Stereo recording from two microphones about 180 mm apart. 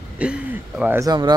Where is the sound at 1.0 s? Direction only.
20° right (ahead or behind).